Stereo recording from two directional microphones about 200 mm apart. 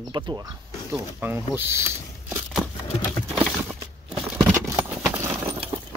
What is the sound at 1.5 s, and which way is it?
Speech, 10° right (ahead or behind).